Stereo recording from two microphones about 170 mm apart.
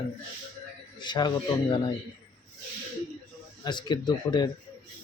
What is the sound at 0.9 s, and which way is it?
Speech, 25° left (ahead or behind).